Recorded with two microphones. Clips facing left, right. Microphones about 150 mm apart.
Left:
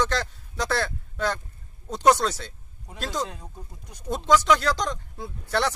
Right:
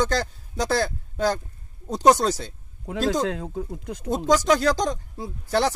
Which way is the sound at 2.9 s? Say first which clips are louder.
Right 8 dB; 90° right.